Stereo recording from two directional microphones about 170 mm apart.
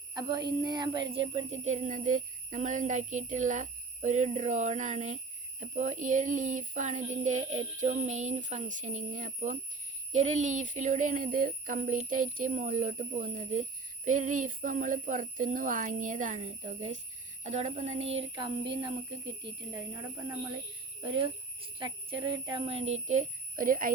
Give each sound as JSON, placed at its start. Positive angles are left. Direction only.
{"t": 0.1, "sound": "a sound", "side_deg": -25}
{"t": 0.6, "sound": "speech", "side_deg": -25}
{"t": 1.3, "sound": "a child's voice", "side_deg": -35}
{"t": 18.3, "sound": "a child's voice", "side_deg": -30}